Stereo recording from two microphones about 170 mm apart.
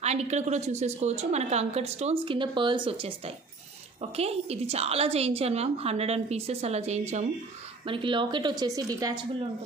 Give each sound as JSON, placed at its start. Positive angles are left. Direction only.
{"t": 0.0, "sound": "a woman's voice", "side_deg": -40}
{"t": 7.8, "sound": "a woman's voice", "side_deg": -30}